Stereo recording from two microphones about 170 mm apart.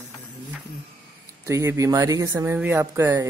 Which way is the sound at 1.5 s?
20° right (ahead or behind).